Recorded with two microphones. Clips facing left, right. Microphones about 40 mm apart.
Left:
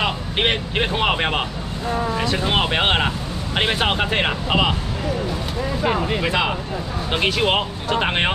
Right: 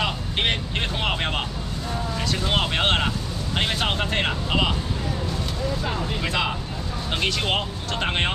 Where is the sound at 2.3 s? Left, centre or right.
Centre.